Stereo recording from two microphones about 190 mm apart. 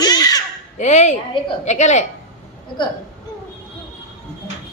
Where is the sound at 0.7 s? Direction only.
40° left (ahead or behind).